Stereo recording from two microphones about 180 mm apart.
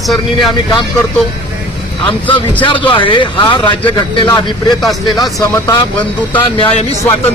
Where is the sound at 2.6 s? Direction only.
30° left (ahead or behind).